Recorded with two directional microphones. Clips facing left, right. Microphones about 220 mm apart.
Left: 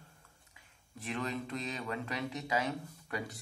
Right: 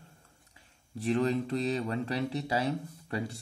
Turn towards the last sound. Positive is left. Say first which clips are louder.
# right 5 dB
turn(degrees=-30)  # may be behind; listen again after turning